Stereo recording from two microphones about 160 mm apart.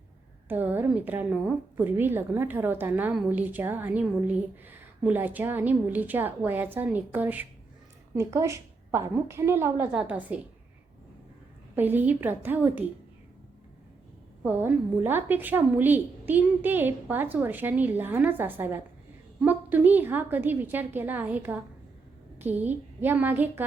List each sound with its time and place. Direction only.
0.4 s a woman's voice: 10° right (ahead or behind)
11.7 s a woman's voice: 10° right (ahead or behind)
14.4 s a woman's voice: 15° right (ahead or behind)